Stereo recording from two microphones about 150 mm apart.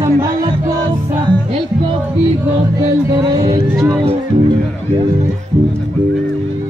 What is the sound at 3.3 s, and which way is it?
Speech, 30° right (ahead or behind).